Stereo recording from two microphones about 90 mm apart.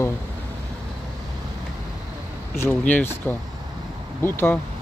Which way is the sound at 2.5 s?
20° left (ahead or behind).